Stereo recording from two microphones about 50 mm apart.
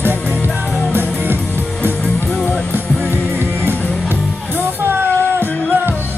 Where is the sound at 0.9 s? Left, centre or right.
Right.